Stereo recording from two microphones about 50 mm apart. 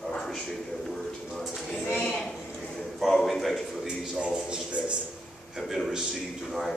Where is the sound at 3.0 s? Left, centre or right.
Centre.